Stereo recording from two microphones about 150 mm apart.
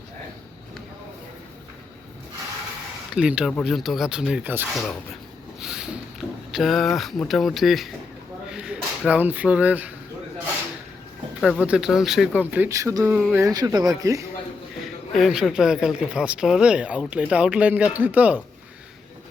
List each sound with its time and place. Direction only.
3.2 s speech: 5° right (ahead or behind)
5.5 s a sound: 5° right (ahead or behind)
6.9 s speech: centre (ahead or behind)
11.3 s speech: centre (ahead or behind); by 14.3 s 20° right (ahead or behind)
15.1 s speech: 5° right (ahead or behind)